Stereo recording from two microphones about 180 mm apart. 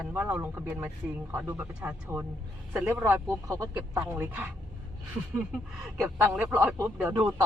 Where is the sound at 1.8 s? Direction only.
10° right (ahead or behind).